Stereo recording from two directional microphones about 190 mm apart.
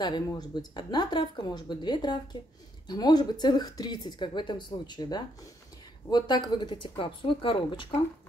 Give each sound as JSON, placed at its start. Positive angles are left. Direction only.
{"t": 0.0, "sound": "speech", "side_deg": 20}